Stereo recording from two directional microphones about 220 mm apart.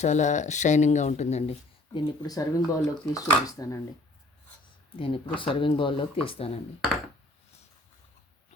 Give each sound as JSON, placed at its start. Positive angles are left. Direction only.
{"t": 0.0, "sound": "speech", "side_deg": 35}
{"t": 4.9, "sound": "speech", "side_deg": 25}